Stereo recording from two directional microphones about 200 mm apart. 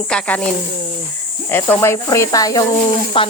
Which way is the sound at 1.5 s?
10° left (ahead or behind).